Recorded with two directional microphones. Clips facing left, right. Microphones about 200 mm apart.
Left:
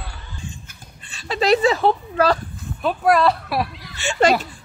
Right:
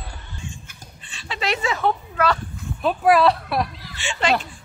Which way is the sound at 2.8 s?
Centre (ahead or behind).